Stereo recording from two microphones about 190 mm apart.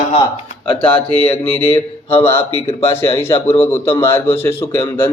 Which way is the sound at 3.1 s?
15° left (ahead or behind).